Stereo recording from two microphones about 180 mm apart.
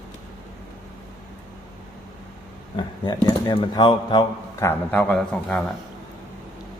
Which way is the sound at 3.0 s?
25° left (ahead or behind).